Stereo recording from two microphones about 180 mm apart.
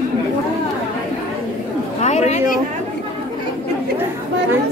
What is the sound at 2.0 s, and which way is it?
Speech, 40° left (ahead or behind).